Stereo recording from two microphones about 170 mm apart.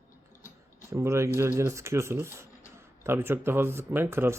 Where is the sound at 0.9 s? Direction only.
15° right (ahead or behind).